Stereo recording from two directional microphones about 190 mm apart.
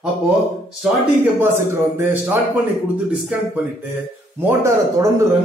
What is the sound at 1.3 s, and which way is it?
A man's voice, 10° right (ahead or behind).